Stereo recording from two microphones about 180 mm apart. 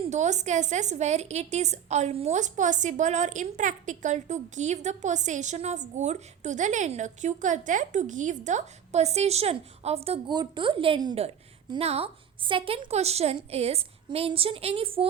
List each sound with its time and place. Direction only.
0.0 s a woman's voice: 40° right (ahead or behind)